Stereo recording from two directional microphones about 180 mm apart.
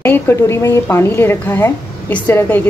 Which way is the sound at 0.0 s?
15° left (ahead or behind).